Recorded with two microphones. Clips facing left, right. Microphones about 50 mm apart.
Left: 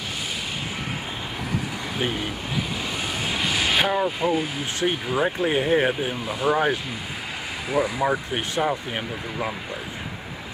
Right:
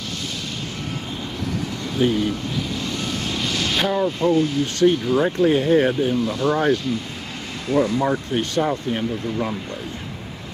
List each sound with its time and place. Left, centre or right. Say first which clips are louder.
2.0 s speech: right 8 dB; centre